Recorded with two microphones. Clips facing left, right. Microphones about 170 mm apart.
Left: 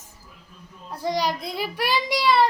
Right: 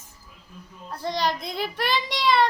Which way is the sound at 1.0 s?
10° left (ahead or behind).